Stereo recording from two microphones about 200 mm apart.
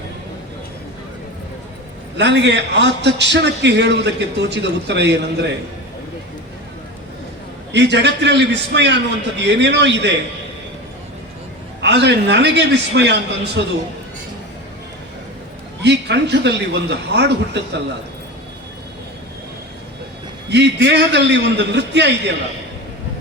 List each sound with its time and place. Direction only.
2.1 s a man's voice: 60° right (ahead or behind)
7.7 s a man's voice: 60° right (ahead or behind)
11.8 s a man's voice: 60° right (ahead or behind)
15.8 s a man's voice: 60° right (ahead or behind)
20.5 s a man's voice: 60° right (ahead or behind)